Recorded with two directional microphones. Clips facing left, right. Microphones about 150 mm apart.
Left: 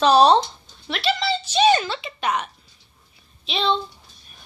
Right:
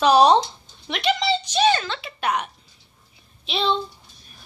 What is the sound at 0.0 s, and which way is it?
Speech, 10° right (ahead or behind).